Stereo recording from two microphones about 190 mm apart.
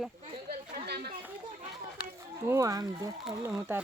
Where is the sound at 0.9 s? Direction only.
55° right (ahead or behind).